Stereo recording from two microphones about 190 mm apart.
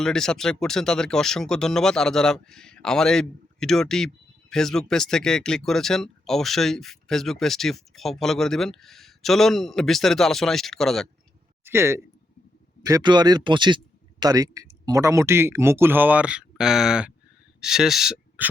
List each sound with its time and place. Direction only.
0.0 s speech: 5° left (ahead or behind)
11.6 s a man's voice: 10° right (ahead or behind)